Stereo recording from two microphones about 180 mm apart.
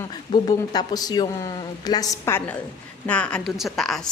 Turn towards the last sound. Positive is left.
turn(degrees=0)  # may be behind; listen again after turning